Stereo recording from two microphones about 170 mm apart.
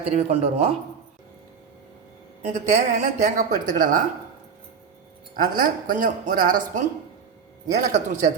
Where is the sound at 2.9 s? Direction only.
45° right (ahead or behind).